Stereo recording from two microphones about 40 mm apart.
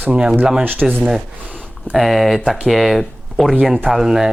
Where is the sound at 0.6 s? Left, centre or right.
Right.